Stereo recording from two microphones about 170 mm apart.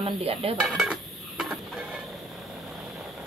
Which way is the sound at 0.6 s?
Centre (ahead or behind).